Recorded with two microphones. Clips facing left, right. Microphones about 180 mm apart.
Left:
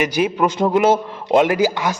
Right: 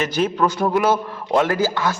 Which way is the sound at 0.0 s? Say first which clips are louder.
Left 2 dB; 10° left (ahead or behind).